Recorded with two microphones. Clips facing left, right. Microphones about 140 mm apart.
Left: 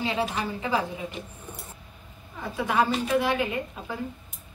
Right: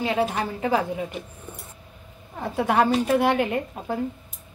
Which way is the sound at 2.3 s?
55° right (ahead or behind).